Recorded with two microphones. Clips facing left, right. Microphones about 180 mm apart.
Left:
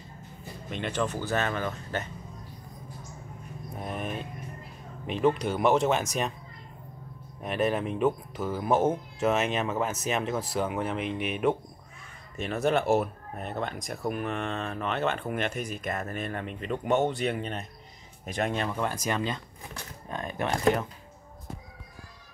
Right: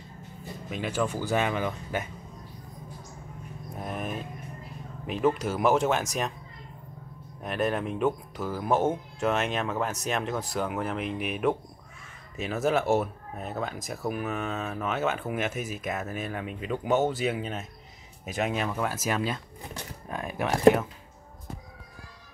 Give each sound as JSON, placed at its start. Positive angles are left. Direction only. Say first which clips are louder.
{"t": 0.7, "sound": "speech", "louder": "right 1 dB", "side_deg": -5}
{"t": 3.7, "sound": "a sound", "louder": "even", "side_deg": 0}
{"t": 5.0, "sound": "speech", "louder": "left 1 dB", "side_deg": 0}
{"t": 7.4, "sound": "speech", "louder": "left 1 dB", "side_deg": 0}
{"t": 20.1, "sound": "music", "louder": "right 1 dB", "side_deg": -5}